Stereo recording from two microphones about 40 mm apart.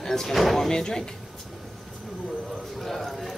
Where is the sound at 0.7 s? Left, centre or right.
Centre.